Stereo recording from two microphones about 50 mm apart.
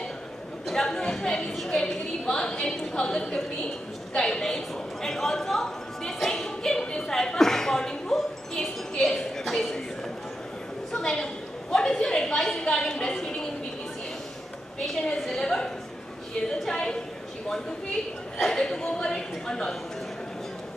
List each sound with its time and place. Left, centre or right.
0.7 s a woman's voice: centre
4.1 s a sound: centre
10.9 s a woman's voice: centre
15.1 s a woman's voice: centre
18.4 s a woman's voice: centre